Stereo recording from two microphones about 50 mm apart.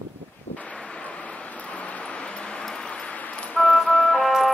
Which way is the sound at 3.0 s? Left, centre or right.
Left.